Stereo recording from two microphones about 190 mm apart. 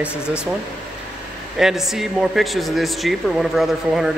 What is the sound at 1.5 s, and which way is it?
A man's voice, centre (ahead or behind).